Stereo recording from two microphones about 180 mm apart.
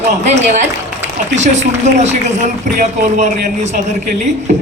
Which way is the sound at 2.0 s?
40° right (ahead or behind).